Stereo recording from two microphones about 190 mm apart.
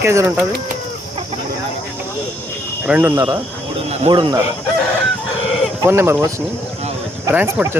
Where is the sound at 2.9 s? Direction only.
10° right (ahead or behind).